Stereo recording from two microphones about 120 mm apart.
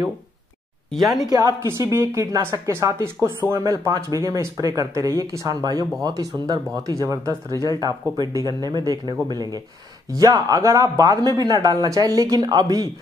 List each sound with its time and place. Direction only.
0.9 s speech: centre (ahead or behind)
1.3 s speech: 25° right (ahead or behind)